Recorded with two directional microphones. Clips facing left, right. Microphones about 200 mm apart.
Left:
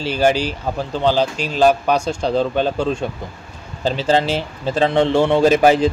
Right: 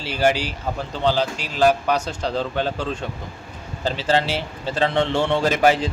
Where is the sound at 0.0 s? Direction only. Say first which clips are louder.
Left 4 dB; 15° left (ahead or behind).